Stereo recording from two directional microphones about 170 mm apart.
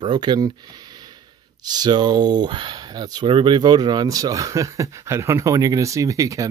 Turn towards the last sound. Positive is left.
turn(degrees=-20)  # may be behind; listen again after turning